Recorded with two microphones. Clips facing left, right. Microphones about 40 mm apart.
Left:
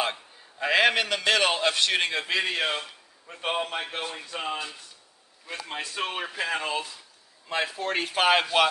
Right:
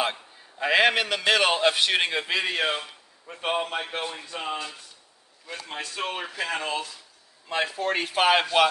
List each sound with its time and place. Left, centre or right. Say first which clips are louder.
0.0 s a man's voice: right 1 dB; centre
5.5 s a man's voice: left 1 dB; centre